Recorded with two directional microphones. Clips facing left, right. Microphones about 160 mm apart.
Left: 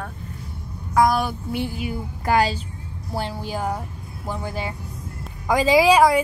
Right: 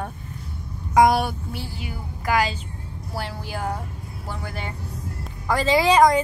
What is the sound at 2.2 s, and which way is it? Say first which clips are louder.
A woman's voice: left 3 dB; 30° left (ahead or behind).